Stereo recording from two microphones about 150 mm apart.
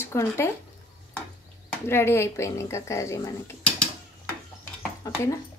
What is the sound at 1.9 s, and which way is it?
Speech, 15° left (ahead or behind).